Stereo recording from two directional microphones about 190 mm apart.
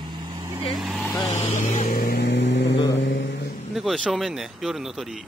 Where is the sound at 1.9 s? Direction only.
60° left (ahead or behind).